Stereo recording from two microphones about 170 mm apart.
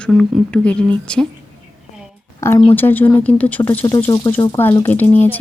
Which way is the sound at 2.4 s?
15° left (ahead or behind).